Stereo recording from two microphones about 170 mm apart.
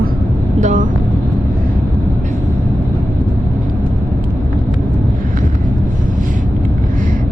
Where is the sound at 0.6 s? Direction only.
50° right (ahead or behind).